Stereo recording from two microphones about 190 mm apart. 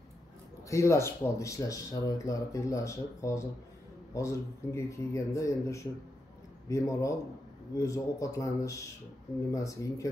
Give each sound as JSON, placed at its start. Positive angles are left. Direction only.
{"t": 0.7, "sound": "speech", "side_deg": 15}